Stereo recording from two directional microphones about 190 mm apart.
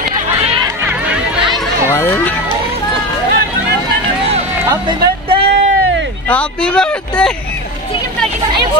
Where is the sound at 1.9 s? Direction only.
10° left (ahead or behind).